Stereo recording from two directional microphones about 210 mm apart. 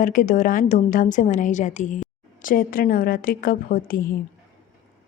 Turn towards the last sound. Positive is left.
turn(degrees=45)  # may be behind; listen again after turning